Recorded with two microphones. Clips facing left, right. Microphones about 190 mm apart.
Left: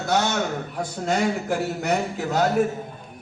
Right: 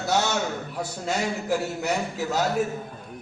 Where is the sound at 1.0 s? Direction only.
55° left (ahead or behind).